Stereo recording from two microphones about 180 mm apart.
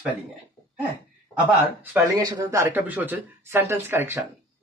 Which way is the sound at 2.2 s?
20° right (ahead or behind).